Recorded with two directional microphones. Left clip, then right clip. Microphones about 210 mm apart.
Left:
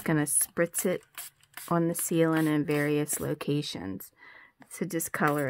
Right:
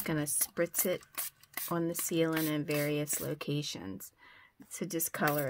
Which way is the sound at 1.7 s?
45° left (ahead or behind).